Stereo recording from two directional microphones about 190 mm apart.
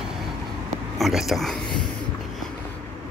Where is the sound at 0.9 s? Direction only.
Centre (ahead or behind).